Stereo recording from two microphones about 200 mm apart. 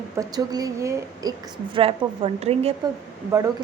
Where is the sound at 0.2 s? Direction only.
20° right (ahead or behind).